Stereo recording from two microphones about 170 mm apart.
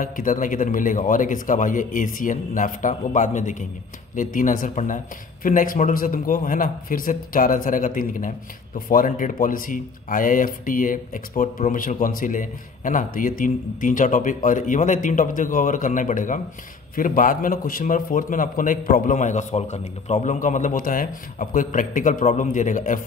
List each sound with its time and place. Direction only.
0.0 s speech: 50° left (ahead or behind)